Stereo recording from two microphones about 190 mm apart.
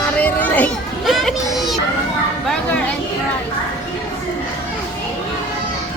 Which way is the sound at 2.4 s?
5° left (ahead or behind).